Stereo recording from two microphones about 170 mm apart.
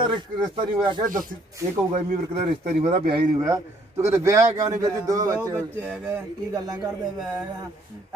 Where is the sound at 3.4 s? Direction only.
15° right (ahead or behind).